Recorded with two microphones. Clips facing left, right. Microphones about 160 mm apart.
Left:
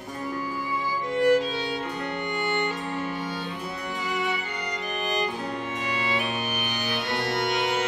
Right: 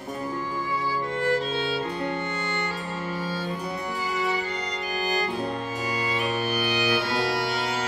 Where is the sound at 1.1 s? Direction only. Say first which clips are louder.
Left 6 dB; 15° left (ahead or behind).